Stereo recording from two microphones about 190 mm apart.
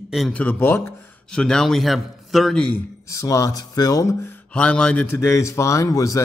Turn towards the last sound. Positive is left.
turn(degrees=15)  # may be behind; listen again after turning